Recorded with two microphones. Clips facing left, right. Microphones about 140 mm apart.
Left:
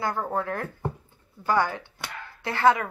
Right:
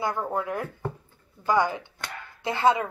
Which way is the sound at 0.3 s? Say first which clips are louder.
Even; 15° right (ahead or behind).